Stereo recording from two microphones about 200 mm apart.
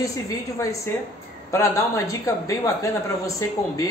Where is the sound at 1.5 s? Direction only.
15° left (ahead or behind).